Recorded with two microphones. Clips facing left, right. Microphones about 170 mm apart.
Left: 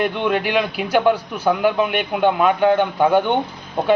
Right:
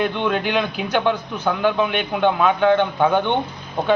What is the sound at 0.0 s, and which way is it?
A man's voice, 5° left (ahead or behind).